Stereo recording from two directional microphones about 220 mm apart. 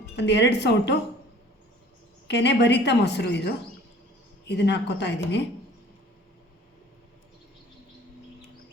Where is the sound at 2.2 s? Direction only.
50° left (ahead or behind).